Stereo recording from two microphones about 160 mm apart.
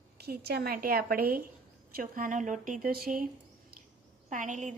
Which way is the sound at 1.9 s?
60° right (ahead or behind).